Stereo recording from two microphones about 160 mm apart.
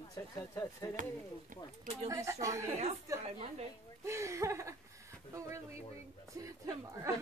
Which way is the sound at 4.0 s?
20° right (ahead or behind).